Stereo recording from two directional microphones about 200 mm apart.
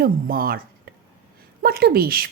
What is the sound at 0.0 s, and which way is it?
Speech, 45° right (ahead or behind).